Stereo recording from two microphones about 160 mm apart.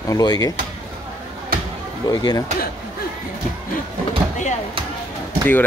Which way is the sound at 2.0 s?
25° left (ahead or behind).